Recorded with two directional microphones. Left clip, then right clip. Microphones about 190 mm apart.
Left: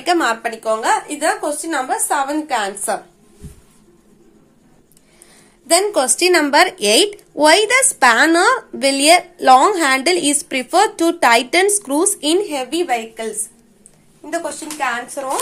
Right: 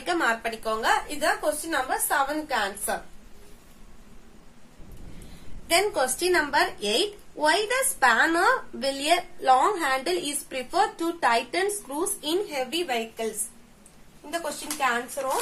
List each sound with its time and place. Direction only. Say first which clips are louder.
0.0 s a woman's voice: left 8 dB; 25° left (ahead or behind)
5.7 s speech: left 8 dB; 25° left (ahead or behind)